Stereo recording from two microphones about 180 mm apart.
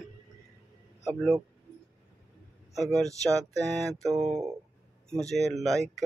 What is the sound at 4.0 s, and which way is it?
Speech, 15° right (ahead or behind).